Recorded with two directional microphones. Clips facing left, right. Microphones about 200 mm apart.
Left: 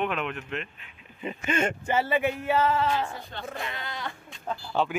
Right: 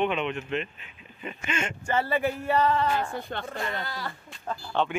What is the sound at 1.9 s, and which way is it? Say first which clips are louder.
Speech: right 1 dB; centre (ahead or behind).